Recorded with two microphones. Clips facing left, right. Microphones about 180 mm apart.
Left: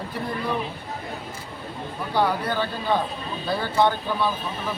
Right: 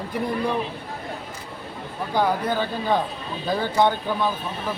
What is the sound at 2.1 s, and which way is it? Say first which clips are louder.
Speech: right 1 dB; 15° right (ahead or behind).